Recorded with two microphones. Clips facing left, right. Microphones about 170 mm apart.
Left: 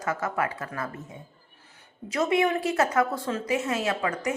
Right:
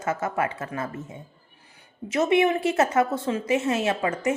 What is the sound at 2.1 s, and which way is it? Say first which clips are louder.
Speech: right 3 dB; 25° right (ahead or behind).